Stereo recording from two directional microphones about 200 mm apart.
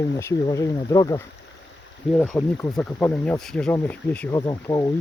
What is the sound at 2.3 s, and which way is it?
Speech, 10° left (ahead or behind).